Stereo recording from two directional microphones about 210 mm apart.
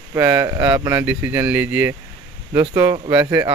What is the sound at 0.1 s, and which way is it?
Speech, 15° right (ahead or behind).